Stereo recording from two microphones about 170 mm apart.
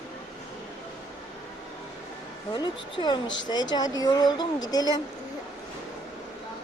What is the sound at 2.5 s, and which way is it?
Speech, 25° left (ahead or behind).